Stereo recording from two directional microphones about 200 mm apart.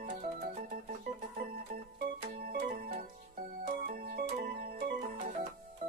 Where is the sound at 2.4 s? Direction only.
50° right (ahead or behind).